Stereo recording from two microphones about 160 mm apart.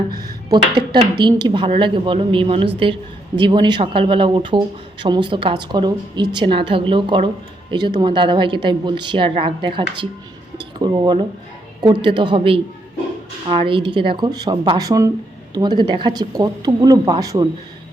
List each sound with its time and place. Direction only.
1.2 s a woman's voice: 25° right (ahead or behind)